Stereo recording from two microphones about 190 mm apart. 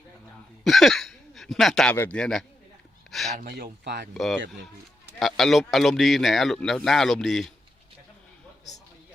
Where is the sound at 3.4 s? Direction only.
55° right (ahead or behind).